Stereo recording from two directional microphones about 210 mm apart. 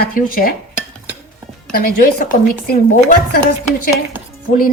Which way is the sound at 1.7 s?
45° left (ahead or behind).